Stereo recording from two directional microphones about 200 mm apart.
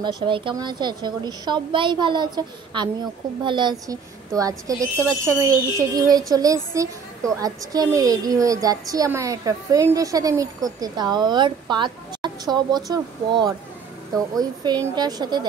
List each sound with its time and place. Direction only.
0.0 s a woman's voice: 25° right (ahead or behind)